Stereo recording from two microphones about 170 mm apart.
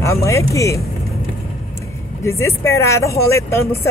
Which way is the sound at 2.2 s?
15° left (ahead or behind).